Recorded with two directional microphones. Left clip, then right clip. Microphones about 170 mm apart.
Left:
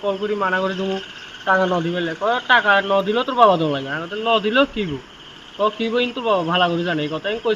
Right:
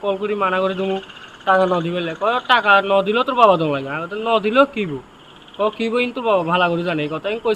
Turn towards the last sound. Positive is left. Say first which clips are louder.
# right 1 dB
turn(degrees=-25)  # may be behind; listen again after turning